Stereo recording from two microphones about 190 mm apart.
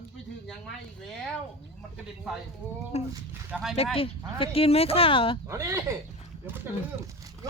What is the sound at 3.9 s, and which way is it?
Speech, 30° left (ahead or behind).